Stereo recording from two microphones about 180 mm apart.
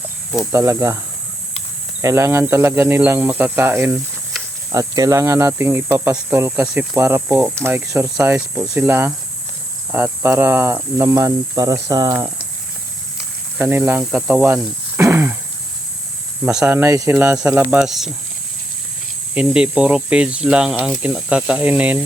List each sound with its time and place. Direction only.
0.5 s speech: 15° right (ahead or behind)
2.0 s speech: 15° right (ahead or behind)
13.6 s speech: 10° right (ahead or behind)
16.5 s speech: 5° right (ahead or behind)
19.3 s speech: 5° right (ahead or behind)